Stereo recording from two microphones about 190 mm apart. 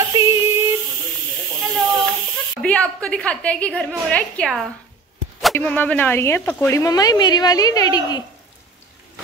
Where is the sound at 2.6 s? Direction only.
5° left (ahead or behind).